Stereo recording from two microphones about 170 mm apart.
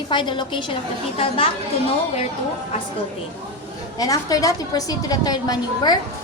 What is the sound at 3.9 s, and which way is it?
A woman's voice, 20° left (ahead or behind).